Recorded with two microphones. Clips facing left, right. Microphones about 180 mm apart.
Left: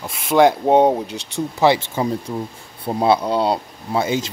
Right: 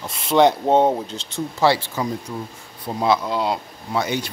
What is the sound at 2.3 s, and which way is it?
Speech, 30° left (ahead or behind).